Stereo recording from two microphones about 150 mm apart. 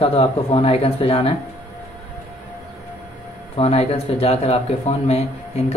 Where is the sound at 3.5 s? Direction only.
40° left (ahead or behind).